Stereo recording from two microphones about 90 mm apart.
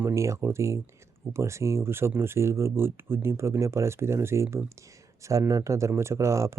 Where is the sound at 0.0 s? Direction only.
35° right (ahead or behind).